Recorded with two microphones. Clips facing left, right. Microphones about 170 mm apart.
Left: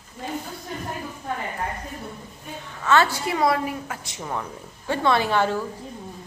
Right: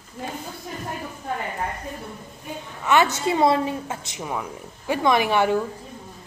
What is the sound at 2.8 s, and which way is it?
A woman's voice, 20° right (ahead or behind).